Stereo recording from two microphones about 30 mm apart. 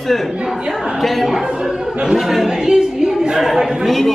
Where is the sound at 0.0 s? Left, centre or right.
Centre.